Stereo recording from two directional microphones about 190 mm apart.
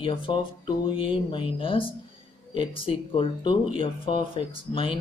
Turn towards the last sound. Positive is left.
turn(degrees=25)  # may be behind; listen again after turning